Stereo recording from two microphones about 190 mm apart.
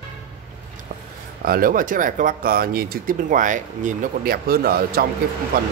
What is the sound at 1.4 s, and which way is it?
Speech, 50° right (ahead or behind).